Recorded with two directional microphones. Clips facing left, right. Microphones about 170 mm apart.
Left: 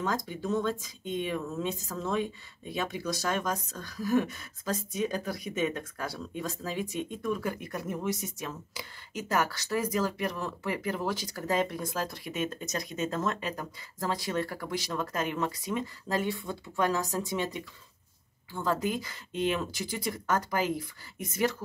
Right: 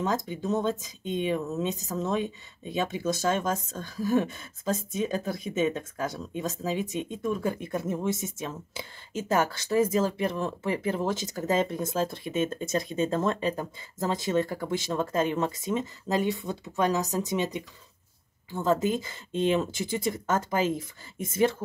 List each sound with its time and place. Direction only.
0.0 s speech: 20° right (ahead or behind)